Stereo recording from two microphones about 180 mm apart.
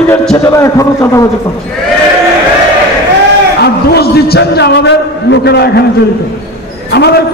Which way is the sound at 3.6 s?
60° left (ahead or behind).